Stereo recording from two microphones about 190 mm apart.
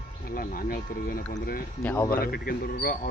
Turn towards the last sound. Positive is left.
turn(degrees=50)  # may be behind; listen again after turning